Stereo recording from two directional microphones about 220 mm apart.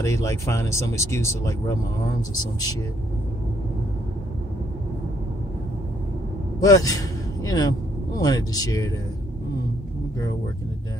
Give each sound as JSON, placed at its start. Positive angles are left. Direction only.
{"t": 0.0, "sound": "speech", "side_deg": 15}
{"t": 6.6, "sound": "a man's voice", "side_deg": 15}